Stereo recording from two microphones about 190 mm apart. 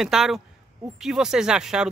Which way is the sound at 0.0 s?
Centre (ahead or behind).